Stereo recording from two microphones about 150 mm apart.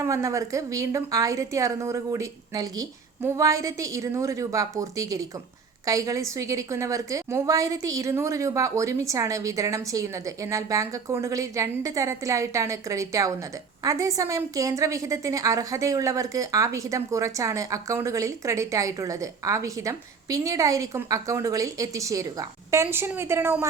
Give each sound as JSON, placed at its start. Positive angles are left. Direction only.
{"t": 0.0, "sound": "a woman's voice", "side_deg": -20}